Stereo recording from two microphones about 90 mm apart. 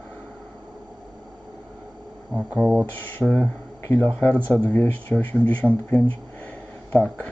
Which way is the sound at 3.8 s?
25° left (ahead or behind).